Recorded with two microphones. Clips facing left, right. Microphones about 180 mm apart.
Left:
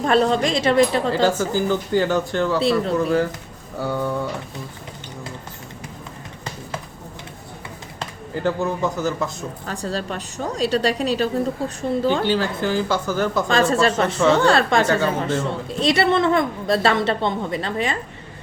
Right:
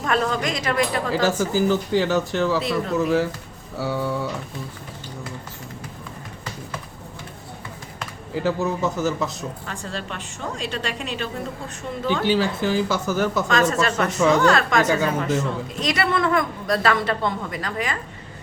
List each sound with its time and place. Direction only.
0.0 s a woman's voice: 30° left (ahead or behind)
1.1 s speech: 5° right (ahead or behind)
2.6 s a woman's voice: 30° left (ahead or behind)
3.0 s speech: 5° right (ahead or behind)
8.3 s speech: centre (ahead or behind)
9.6 s a woman's voice: 35° left (ahead or behind)
12.3 s speech: 10° right (ahead or behind)
13.5 s a woman's voice: 30° left (ahead or behind)